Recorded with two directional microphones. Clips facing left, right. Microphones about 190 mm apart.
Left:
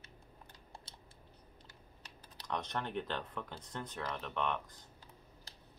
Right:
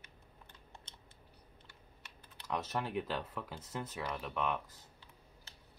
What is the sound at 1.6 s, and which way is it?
Typing, 35° left (ahead or behind).